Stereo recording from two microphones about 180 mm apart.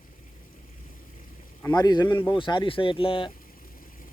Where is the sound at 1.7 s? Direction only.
25° left (ahead or behind).